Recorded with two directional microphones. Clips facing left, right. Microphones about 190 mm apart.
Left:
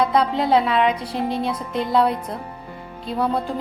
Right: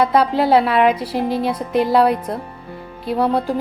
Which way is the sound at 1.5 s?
65° right (ahead or behind).